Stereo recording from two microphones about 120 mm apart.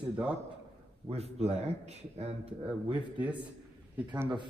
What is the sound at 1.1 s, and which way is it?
Speech, 65° right (ahead or behind).